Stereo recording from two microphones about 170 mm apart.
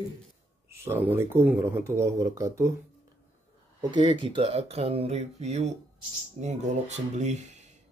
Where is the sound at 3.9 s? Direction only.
30° right (ahead or behind).